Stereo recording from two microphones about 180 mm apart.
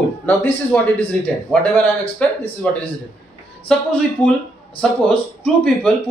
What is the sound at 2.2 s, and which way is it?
Speech, 5° left (ahead or behind).